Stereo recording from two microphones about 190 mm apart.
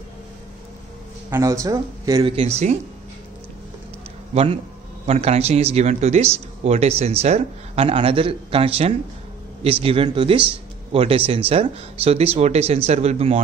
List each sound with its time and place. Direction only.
1.3 s speech: 15° right (ahead or behind); by 2.7 s 30° right (ahead or behind)
4.3 s speech: 35° right (ahead or behind)